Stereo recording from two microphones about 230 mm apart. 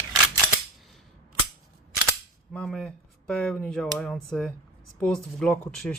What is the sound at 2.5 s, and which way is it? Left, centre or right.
Speech, centre.